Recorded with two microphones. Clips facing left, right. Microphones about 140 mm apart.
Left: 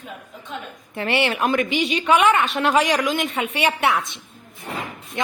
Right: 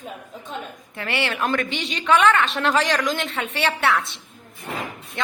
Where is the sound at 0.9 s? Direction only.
20° left (ahead or behind).